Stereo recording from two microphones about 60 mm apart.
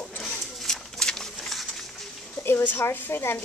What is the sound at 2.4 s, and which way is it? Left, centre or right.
Speech, left.